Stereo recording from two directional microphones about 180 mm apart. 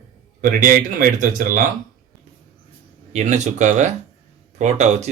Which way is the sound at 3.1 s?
40° right (ahead or behind).